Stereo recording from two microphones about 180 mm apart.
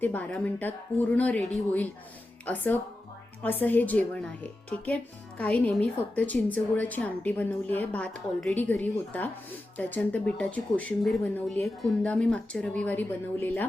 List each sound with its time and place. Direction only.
0.0 s a woman's voice: 10° left (ahead or behind)
2.5 s a woman's voice: 10° left (ahead or behind)